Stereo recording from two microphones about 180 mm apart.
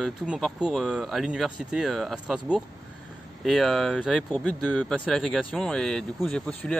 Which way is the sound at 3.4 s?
Centre (ahead or behind).